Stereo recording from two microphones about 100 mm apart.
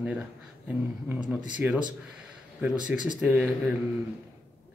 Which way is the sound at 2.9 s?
15° right (ahead or behind).